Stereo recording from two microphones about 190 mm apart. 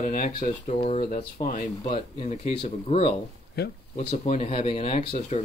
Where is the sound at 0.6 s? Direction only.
30° left (ahead or behind).